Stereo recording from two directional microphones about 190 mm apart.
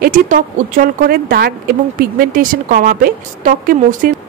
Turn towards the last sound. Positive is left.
turn(degrees=-45)  # may be behind; listen again after turning